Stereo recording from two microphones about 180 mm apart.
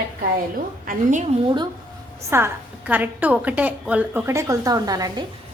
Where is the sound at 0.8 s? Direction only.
45° right (ahead or behind).